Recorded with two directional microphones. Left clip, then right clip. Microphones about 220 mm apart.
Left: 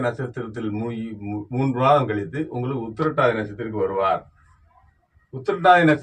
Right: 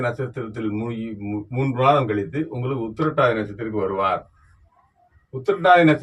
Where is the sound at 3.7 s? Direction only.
15° right (ahead or behind).